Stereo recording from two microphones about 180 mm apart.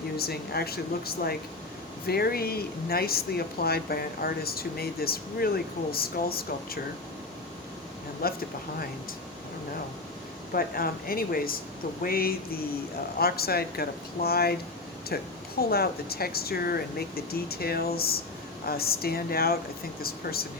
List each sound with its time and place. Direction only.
0.2 s speech: 60° left (ahead or behind)
8.2 s speech: 55° left (ahead or behind)
10.5 s speech: 55° left (ahead or behind)